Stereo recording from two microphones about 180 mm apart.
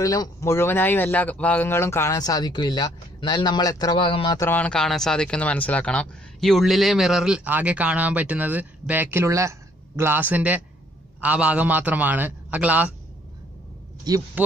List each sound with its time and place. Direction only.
0.0 s speech: 20° left (ahead or behind)
4.4 s a man's voice: 10° left (ahead or behind); by 12.9 s 10° right (ahead or behind)
14.1 s speech: 20° right (ahead or behind)